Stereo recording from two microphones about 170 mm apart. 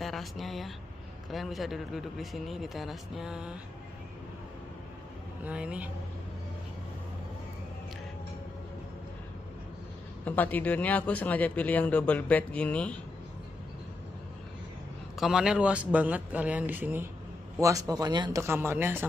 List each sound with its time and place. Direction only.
0.0 s speech: centre (ahead or behind)
5.4 s a man's voice: 5° right (ahead or behind)
10.2 s speech: 10° left (ahead or behind)
15.1 s a man's voice: 5° right (ahead or behind)